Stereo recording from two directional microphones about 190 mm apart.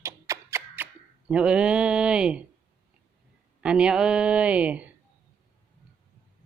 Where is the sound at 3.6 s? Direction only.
5° right (ahead or behind).